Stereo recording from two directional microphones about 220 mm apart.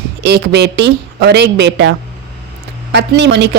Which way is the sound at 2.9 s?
50° right (ahead or behind).